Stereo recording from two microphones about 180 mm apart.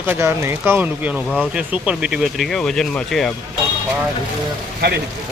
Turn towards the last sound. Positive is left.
turn(degrees=-60)  # may be behind; listen again after turning